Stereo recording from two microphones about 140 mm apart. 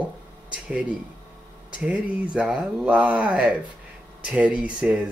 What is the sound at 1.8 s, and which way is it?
Speech, 10° right (ahead or behind).